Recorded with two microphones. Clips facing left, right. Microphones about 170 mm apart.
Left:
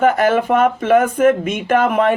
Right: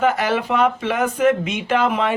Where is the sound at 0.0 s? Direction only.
50° left (ahead or behind).